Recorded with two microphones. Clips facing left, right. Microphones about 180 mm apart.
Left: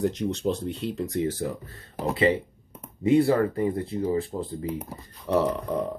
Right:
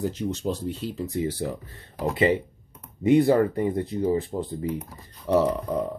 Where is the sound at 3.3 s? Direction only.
30° right (ahead or behind).